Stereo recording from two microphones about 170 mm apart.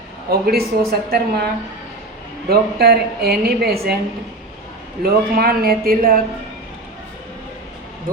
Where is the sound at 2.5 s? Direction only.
70° right (ahead or behind).